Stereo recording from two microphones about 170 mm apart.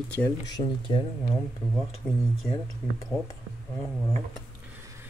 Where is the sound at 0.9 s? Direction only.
25° left (ahead or behind).